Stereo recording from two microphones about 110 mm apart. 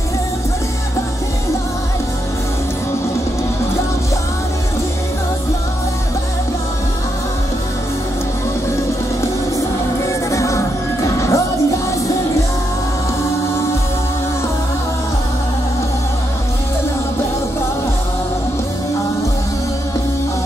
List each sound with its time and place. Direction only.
10.0 s music: 25° left (ahead or behind)